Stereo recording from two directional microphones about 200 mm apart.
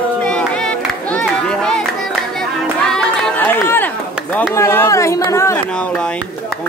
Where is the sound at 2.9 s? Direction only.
10° left (ahead or behind).